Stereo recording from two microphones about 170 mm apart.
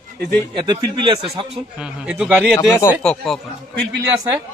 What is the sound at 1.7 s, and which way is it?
Speech, 5° right (ahead or behind).